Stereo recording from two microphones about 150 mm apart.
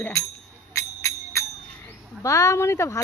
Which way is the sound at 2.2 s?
20° left (ahead or behind).